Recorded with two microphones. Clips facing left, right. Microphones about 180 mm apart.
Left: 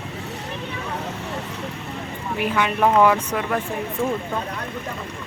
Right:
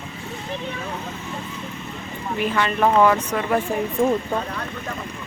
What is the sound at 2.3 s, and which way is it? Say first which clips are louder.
Speech: even; 10° left (ahead or behind).